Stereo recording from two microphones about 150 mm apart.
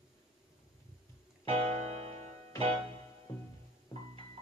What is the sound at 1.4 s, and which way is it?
Music, 40° right (ahead or behind).